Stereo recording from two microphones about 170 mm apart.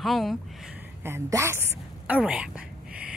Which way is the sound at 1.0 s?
15° right (ahead or behind).